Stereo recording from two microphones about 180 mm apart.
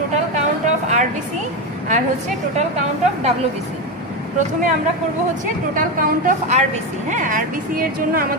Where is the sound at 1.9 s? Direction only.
40° right (ahead or behind).